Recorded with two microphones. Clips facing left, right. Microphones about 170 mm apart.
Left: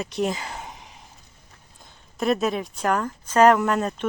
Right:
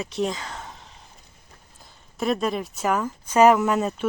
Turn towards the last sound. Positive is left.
turn(degrees=-5)  # may be behind; listen again after turning